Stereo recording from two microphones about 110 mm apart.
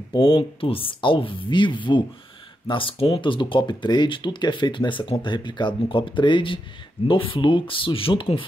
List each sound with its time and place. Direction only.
0.1 s speech: 50° left (ahead or behind)